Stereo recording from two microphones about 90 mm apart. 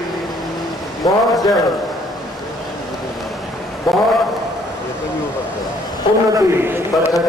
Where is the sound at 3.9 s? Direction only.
50° left (ahead or behind).